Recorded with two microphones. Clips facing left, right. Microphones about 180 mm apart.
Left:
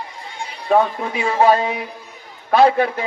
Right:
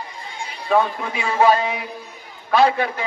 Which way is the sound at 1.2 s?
45° left (ahead or behind).